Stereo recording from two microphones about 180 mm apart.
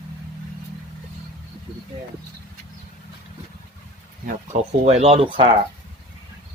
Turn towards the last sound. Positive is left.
turn(degrees=-30)  # may be behind; listen again after turning